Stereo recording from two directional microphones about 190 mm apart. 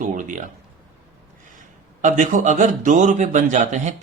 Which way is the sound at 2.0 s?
40° right (ahead or behind).